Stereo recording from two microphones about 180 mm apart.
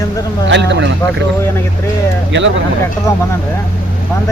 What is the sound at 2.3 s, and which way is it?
Speech, 90° right.